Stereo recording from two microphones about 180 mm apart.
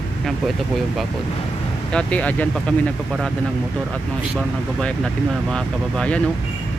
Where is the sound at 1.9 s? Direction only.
5° left (ahead or behind).